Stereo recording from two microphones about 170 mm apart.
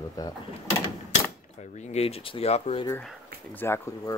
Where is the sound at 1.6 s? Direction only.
40° left (ahead or behind).